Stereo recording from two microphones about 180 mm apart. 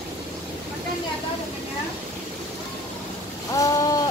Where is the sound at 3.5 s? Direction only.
20° left (ahead or behind).